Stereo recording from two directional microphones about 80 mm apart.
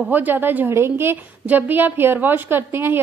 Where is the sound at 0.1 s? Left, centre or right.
Right.